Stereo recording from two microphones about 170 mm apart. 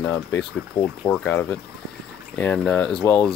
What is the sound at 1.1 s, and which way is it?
Speech, 10° left (ahead or behind).